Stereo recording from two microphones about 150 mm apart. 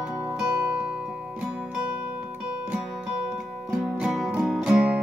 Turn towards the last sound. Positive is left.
turn(degrees=-5)  # may be behind; listen again after turning